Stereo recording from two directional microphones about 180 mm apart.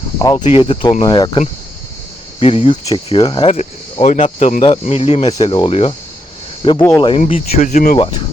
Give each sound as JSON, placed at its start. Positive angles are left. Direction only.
{"t": 0.2, "sound": "speech", "side_deg": 20}
{"t": 0.4, "sound": "speech", "side_deg": 30}
{"t": 7.3, "sound": "speech", "side_deg": 40}